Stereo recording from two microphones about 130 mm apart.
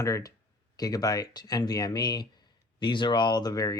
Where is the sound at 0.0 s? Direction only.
25° left (ahead or behind).